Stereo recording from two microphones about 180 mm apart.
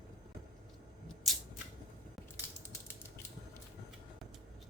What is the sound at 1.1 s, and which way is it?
Scissors, centre (ahead or behind).